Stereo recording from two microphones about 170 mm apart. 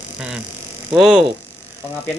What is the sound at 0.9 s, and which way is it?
Speech, 5° right (ahead or behind).